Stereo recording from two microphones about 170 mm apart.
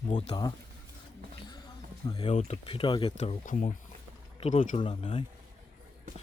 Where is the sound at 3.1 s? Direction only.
45° left (ahead or behind).